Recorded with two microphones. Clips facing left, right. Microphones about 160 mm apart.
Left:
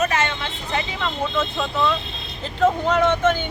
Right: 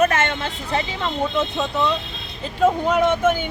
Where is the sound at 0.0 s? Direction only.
50° right (ahead or behind).